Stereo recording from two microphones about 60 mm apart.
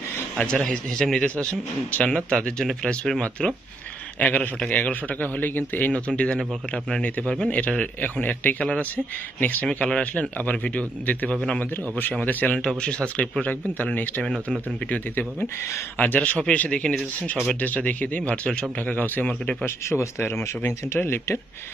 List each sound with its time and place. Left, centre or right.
0.5 s a man's voice: centre
1.2 s a man's voice: centre
4.2 s a man's voice: left
8.0 s speech: left
9.7 s a man's voice: centre; by 12.5 s left
12.5 s speech: centre
14.2 s a man's voice: centre
16.0 s speech: left
17.6 s speech: left
19.6 s speech: left